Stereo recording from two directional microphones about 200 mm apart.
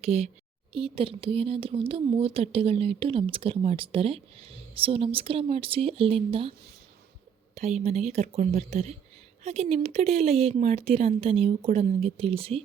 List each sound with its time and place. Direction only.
0.0 s speech: 30° right (ahead or behind)
7.5 s speech: 35° right (ahead or behind)